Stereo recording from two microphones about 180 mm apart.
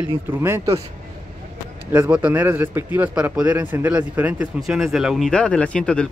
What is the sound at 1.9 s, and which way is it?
A man's voice, 10° right (ahead or behind).